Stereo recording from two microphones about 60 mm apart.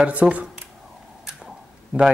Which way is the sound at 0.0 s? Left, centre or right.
Right.